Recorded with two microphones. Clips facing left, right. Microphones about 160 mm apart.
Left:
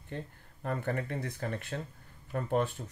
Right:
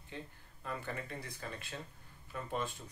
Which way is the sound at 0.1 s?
55° left (ahead or behind).